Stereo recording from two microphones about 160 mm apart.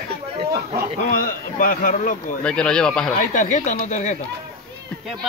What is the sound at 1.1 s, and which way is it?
A man's voice, 60° left (ahead or behind).